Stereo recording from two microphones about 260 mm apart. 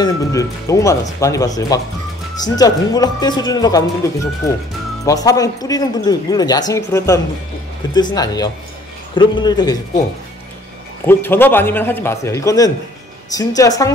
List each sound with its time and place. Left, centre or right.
0.0 s speech: centre
11.1 s speech: centre